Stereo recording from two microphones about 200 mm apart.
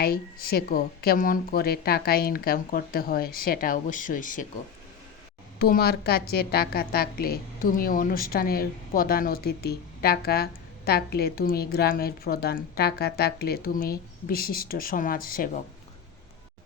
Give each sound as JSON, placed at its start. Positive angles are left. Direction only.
{"t": 0.0, "sound": "a woman's voice", "side_deg": 50}
{"t": 5.5, "sound": "a woman's voice", "side_deg": 50}